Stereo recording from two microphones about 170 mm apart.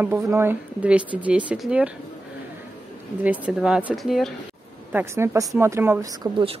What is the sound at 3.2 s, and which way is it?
A woman's voice, 10° right (ahead or behind).